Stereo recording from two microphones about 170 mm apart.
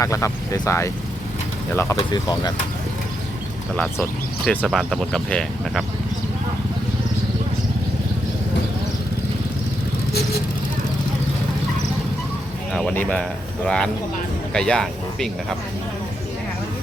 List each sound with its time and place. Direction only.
0.0 s speech: 20° left (ahead or behind)
2.1 s speech: 25° left (ahead or behind)
3.9 s speech: 15° left (ahead or behind)
4.6 s speech: centre (ahead or behind)
10.1 s vehicle: 65° left (ahead or behind)
12.7 s speech: 5° left (ahead or behind)